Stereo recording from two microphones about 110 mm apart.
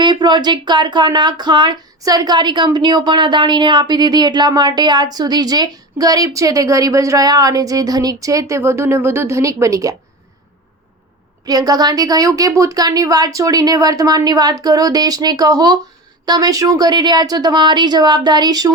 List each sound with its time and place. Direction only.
0.0 s speech: 40° right (ahead or behind)
11.4 s speech: 35° right (ahead or behind)